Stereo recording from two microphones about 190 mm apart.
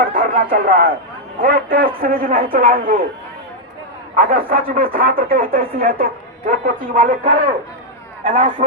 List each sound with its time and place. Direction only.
0.0 s speech: 45° right (ahead or behind)
4.1 s speech: 50° right (ahead or behind)